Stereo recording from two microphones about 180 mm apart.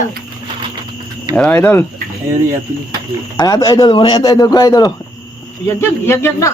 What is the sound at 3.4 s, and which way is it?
Speech, 20° left (ahead or behind).